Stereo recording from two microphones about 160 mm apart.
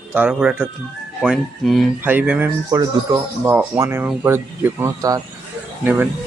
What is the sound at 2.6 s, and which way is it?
Speech, 20° right (ahead or behind).